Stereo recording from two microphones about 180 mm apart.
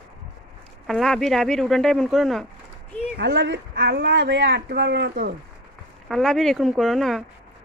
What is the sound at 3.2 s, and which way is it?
Speech, 80° right.